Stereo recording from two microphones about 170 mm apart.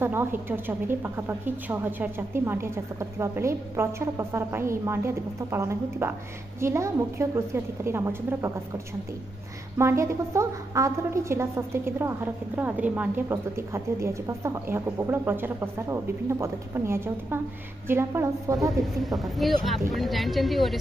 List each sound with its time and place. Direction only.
0.0 s a woman's voice: 15° right (ahead or behind)
19.1 s speech: centre (ahead or behind)